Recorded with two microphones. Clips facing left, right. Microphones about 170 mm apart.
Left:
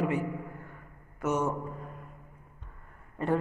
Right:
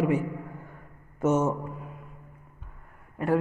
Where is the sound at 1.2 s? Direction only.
25° right (ahead or behind).